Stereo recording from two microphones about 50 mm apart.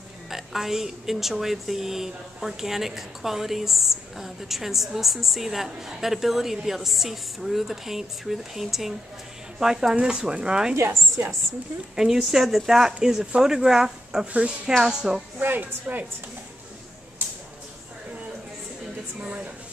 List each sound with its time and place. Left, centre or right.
0.3 s a woman's voice: centre
11.9 s speech: centre
14.2 s speech: right
14.8 s speech: centre
15.4 s a woman's voice: right
19.2 s a woman's voice: right